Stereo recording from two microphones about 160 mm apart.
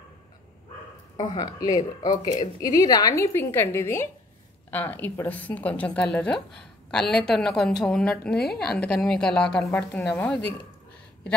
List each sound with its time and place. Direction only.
1.3 s a woman's voice: 25° left (ahead or behind)